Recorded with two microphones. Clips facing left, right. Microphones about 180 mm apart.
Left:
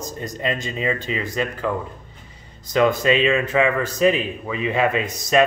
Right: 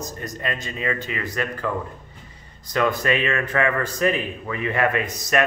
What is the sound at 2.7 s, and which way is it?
A man's voice, 20° left (ahead or behind).